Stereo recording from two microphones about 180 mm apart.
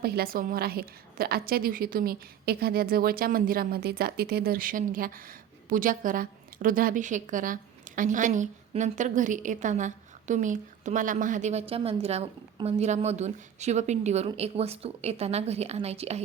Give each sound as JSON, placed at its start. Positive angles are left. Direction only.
{"t": 0.0, "sound": "a woman's voice", "side_deg": -60}